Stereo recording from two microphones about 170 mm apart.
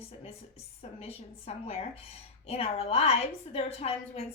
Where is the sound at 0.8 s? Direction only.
35° left (ahead or behind).